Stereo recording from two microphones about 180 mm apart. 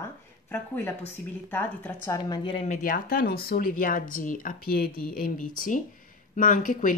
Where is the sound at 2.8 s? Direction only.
55° left (ahead or behind).